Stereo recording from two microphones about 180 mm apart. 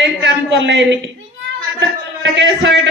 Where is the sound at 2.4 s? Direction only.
80° right.